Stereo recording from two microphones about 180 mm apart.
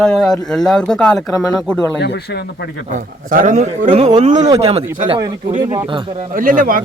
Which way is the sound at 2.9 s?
50° right (ahead or behind).